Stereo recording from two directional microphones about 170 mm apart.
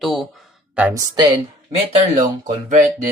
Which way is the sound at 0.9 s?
25° right (ahead or behind).